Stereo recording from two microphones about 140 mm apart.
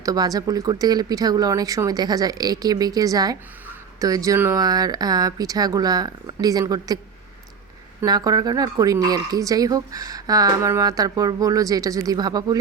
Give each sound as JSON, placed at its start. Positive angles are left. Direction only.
{"t": 0.0, "sound": "speech", "side_deg": -25}
{"t": 8.0, "sound": "speech", "side_deg": -30}